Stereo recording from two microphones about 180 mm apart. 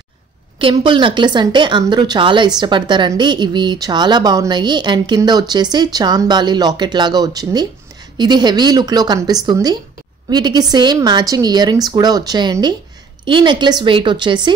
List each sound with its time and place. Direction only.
0.6 s speech: 30° right (ahead or behind)